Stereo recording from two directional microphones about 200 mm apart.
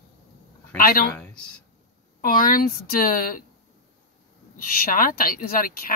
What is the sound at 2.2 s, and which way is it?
Speech, 45° left (ahead or behind).